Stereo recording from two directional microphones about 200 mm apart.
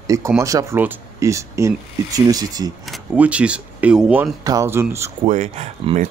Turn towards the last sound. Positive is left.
turn(degrees=-35)  # may be behind; listen again after turning